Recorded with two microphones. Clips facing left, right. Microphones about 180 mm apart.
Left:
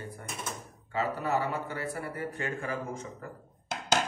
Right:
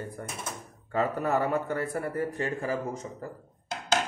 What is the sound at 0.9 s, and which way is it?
A man's voice, 55° right (ahead or behind).